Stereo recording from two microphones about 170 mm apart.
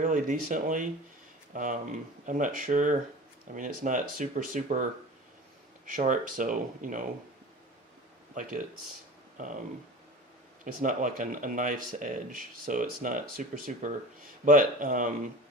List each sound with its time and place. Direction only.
0.0 s speech: 50° right (ahead or behind)
8.4 s speech: 50° right (ahead or behind)
10.6 s speech: 50° right (ahead or behind)